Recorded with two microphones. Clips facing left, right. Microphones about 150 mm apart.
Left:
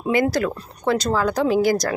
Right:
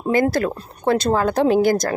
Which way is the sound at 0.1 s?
50° right (ahead or behind).